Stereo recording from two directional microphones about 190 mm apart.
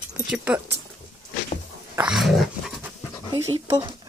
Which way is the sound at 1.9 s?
5° right (ahead or behind).